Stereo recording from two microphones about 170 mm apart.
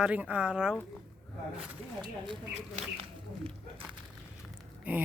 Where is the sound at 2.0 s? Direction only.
25° right (ahead or behind).